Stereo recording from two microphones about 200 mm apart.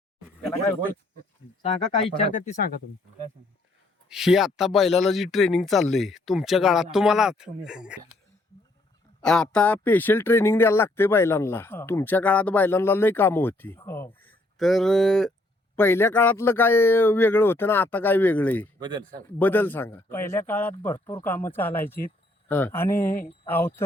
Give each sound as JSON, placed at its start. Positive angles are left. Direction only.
{"t": 2.3, "sound": "speech", "side_deg": 40}
{"t": 4.1, "sound": "speech", "side_deg": 0}
{"t": 9.2, "sound": "speech", "side_deg": 5}
{"t": 18.8, "sound": "speech", "side_deg": -20}
{"t": 19.4, "sound": "speech", "side_deg": 10}
{"t": 23.0, "sound": "speech", "side_deg": 45}
{"t": 23.5, "sound": "speech", "side_deg": 10}